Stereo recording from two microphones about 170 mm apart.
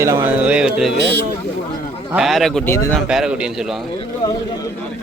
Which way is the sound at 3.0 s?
5° right (ahead or behind).